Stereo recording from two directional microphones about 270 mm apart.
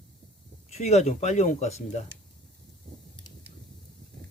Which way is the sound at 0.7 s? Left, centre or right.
Left.